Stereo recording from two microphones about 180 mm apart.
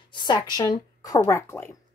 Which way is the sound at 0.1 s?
25° left (ahead or behind).